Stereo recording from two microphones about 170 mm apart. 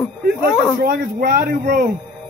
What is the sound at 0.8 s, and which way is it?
Speech, 60° right (ahead or behind).